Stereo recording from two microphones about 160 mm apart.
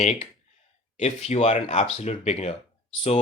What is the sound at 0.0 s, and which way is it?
Speech, 45° left (ahead or behind).